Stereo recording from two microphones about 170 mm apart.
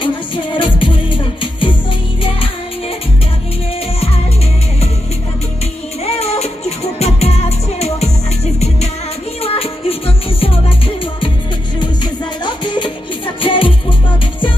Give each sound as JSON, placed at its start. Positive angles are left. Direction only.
{"t": 0.5, "sound": "music", "side_deg": 30}
{"t": 6.1, "sound": "music", "side_deg": 40}
{"t": 9.4, "sound": "music", "side_deg": 35}
{"t": 12.4, "sound": "music", "side_deg": 25}